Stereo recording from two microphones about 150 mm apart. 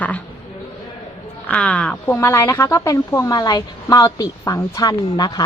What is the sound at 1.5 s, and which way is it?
A woman's voice, 10° left (ahead or behind).